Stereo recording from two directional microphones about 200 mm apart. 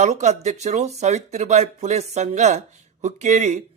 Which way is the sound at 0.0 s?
35° right (ahead or behind).